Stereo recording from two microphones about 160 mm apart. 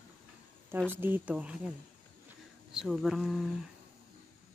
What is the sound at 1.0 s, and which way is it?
Speech, 10° right (ahead or behind).